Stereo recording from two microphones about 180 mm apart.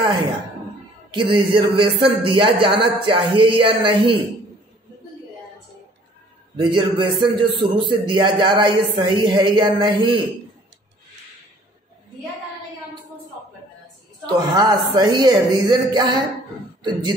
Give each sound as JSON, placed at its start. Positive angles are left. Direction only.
{"t": 1.1, "sound": "a man's voice", "side_deg": -30}
{"t": 6.5, "sound": "a man's voice", "side_deg": -25}
{"t": 14.2, "sound": "a man's voice", "side_deg": -20}